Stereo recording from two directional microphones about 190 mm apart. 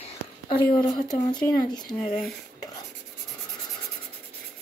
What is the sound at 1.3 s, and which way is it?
Speech, 20° left (ahead or behind).